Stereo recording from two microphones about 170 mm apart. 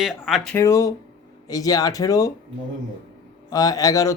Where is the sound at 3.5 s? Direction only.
20° left (ahead or behind).